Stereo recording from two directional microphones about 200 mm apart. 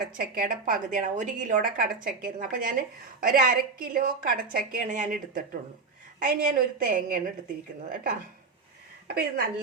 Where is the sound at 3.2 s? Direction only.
45° right (ahead or behind).